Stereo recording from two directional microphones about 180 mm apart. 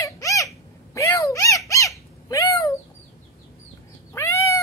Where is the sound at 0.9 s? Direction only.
20° left (ahead or behind).